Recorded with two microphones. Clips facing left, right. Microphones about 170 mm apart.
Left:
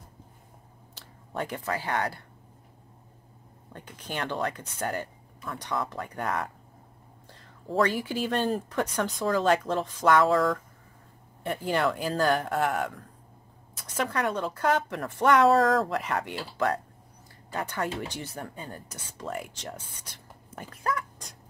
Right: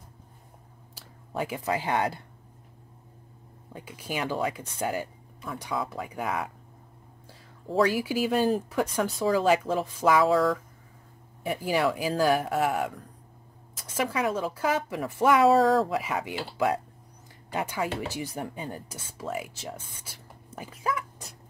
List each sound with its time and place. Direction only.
0.9 s a sound: 5° right (ahead or behind)
1.6 s speech: 15° right (ahead or behind)
3.7 s speech: 5° right (ahead or behind)